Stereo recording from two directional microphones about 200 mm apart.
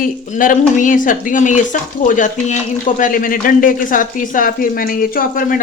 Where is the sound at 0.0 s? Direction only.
40° left (ahead or behind).